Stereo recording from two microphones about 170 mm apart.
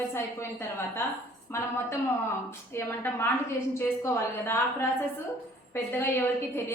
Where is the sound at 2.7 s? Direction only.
15° left (ahead or behind).